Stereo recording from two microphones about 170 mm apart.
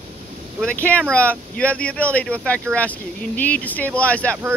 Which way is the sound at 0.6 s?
10° left (ahead or behind).